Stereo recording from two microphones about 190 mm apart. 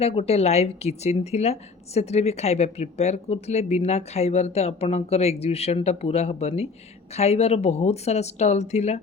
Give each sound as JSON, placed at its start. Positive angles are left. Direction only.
{"t": 0.0, "sound": "a woman's voice", "side_deg": 30}